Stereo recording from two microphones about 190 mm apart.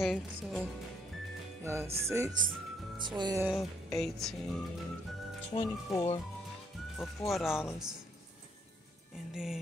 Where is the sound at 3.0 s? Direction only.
25° right (ahead or behind).